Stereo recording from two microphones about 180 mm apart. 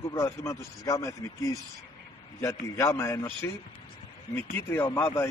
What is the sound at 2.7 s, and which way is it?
A man's voice, 15° left (ahead or behind).